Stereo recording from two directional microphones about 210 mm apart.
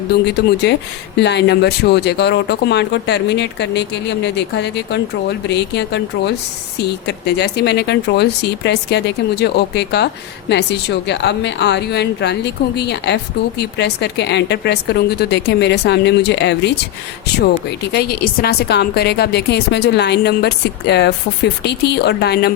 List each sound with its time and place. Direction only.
0.3 s speech: 55° left (ahead or behind)